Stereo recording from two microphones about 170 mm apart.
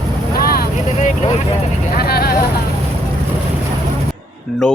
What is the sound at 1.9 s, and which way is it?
Vehicle, 65° left (ahead or behind).